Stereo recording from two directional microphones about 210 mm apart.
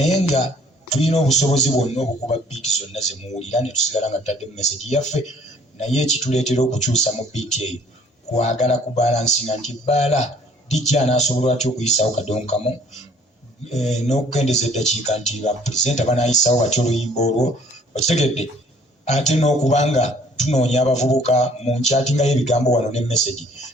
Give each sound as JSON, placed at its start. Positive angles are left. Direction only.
{"t": 0.1, "sound": "a man's voice", "side_deg": 30}
{"t": 13.8, "sound": "a man's voice", "side_deg": 35}